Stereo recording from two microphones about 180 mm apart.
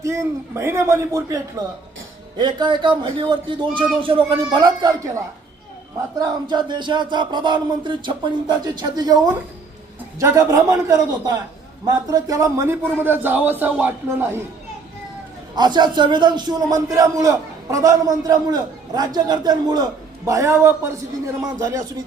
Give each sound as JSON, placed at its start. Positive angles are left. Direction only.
{"t": 0.0, "sound": "a man's voice", "side_deg": -15}
{"t": 2.4, "sound": "a man's voice", "side_deg": -25}
{"t": 15.5, "sound": "a man's voice", "side_deg": -25}